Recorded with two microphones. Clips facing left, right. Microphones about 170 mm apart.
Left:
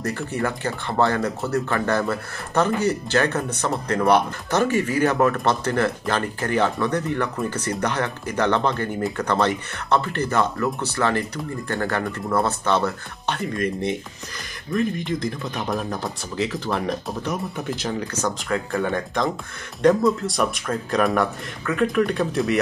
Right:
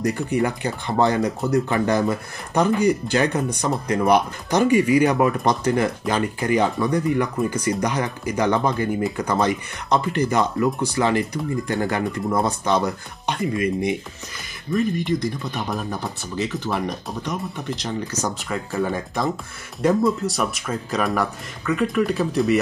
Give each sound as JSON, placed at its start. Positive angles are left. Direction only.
{"t": 0.0, "sound": "speech", "side_deg": -15}
{"t": 14.7, "sound": "speech", "side_deg": 0}